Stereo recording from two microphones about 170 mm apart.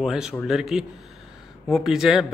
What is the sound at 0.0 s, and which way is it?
A man's voice, 5° right (ahead or behind).